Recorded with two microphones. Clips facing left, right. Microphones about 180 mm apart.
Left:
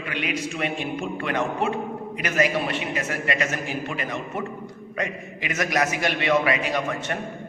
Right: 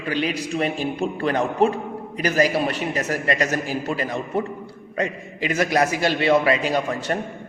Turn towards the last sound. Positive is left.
turn(degrees=-30)  # may be behind; listen again after turning